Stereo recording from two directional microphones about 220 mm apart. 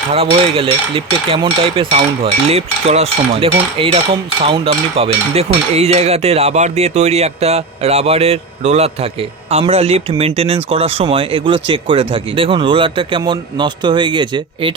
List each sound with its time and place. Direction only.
0.1 s speech: 25° right (ahead or behind)